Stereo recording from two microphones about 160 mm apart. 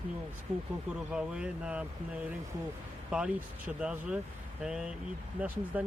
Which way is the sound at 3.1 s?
5° right (ahead or behind).